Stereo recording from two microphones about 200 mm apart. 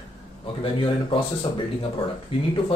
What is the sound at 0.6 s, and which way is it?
Speech, 25° left (ahead or behind).